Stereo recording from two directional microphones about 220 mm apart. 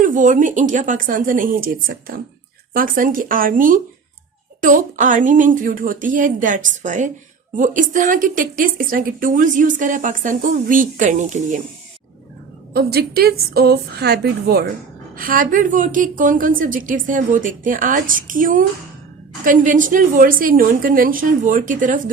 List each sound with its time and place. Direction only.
0.0 s a woman's voice: 35° right (ahead or behind)
12.7 s a woman's voice: 45° right (ahead or behind)